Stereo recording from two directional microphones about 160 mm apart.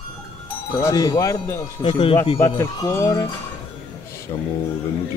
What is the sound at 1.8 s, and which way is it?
Speech, 30° left (ahead or behind).